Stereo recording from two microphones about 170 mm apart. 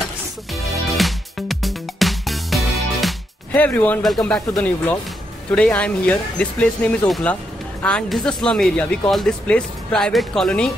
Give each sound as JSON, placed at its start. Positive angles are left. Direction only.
{"t": 0.9, "sound": "music", "side_deg": 0}
{"t": 5.5, "sound": "speech", "side_deg": 5}